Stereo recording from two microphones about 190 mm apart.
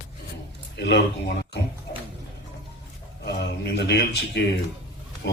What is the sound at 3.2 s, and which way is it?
Mantra, 60° left (ahead or behind).